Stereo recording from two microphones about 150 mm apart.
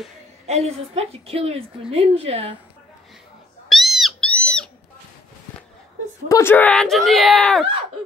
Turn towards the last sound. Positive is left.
turn(degrees=5)  # may be behind; listen again after turning